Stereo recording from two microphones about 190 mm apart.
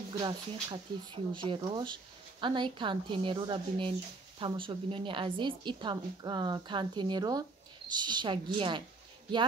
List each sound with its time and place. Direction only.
0.2 s a woman's voice: 25° right (ahead or behind)